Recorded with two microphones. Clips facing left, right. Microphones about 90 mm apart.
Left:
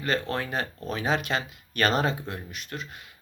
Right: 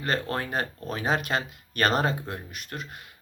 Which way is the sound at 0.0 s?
40° right (ahead or behind).